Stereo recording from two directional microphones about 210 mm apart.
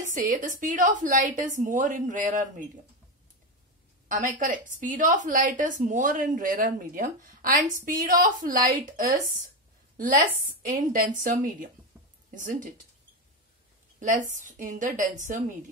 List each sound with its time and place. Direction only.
0.1 s a woman's voice: 40° right (ahead or behind)
4.1 s a woman's voice: 40° right (ahead or behind)
11.9 s a sound: 5° right (ahead or behind)
12.4 s a woman's voice: 40° right (ahead or behind)
13.9 s a woman's voice: 40° right (ahead or behind)